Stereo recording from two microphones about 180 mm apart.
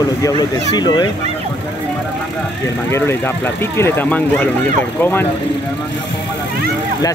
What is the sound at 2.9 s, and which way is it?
Speech, 15° left (ahead or behind).